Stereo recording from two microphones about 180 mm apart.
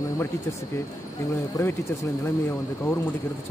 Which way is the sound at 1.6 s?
20° left (ahead or behind).